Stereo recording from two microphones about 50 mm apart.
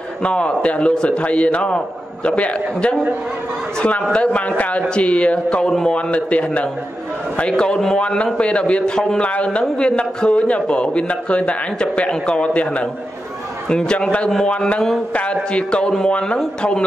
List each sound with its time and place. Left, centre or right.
0.2 s a man's voice: left
4.1 s a man's voice: left
5.7 s a man's voice: centre
5.9 s a man's voice: left
15.5 s a man's voice: left